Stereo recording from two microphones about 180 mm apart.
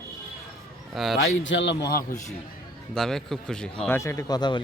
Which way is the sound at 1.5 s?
90° left.